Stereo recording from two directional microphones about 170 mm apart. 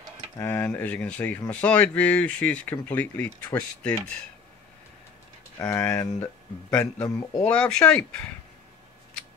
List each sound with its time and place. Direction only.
0.4 s speech: 10° left (ahead or behind)
5.6 s speech: 15° left (ahead or behind)
6.7 s speech: 5° left (ahead or behind)